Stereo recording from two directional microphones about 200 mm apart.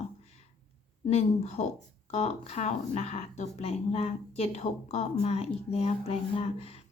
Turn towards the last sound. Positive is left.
turn(degrees=30)  # may be behind; listen again after turning